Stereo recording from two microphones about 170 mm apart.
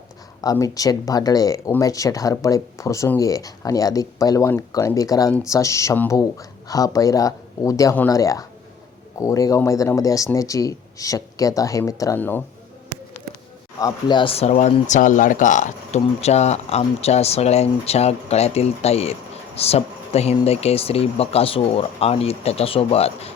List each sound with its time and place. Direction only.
0.5 s speech: 20° left (ahead or behind)
13.7 s speech: 25° left (ahead or behind)